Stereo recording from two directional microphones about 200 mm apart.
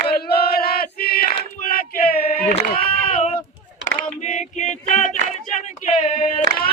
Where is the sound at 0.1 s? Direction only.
50° left (ahead or behind).